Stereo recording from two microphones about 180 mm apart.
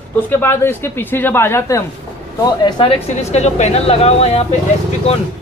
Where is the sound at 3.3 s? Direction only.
40° left (ahead or behind).